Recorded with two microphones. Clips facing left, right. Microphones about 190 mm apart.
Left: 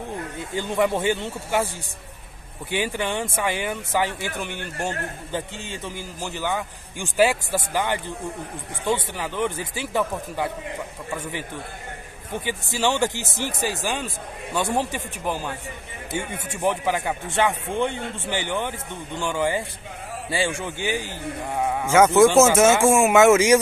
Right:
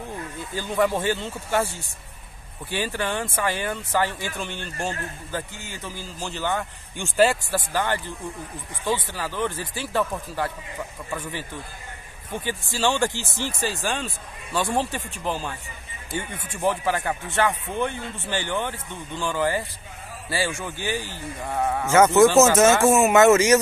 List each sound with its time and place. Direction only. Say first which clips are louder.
0.6 s speech: left 1 dB; 20° left (ahead or behind)
2.7 s a man's voice: left 1 dB; 15° left (ahead or behind)
5.3 s a man's voice: left 3 dB; 25° left (ahead or behind)
12.4 s a man's voice: even; 15° left (ahead or behind)
16.5 s a man's voice: even; 15° left (ahead or behind)